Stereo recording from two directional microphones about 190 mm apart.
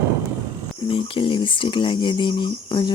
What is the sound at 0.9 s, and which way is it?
Speech, 30° left (ahead or behind).